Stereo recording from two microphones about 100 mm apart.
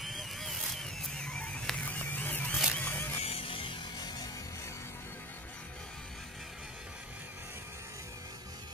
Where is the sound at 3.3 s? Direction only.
70° left (ahead or behind).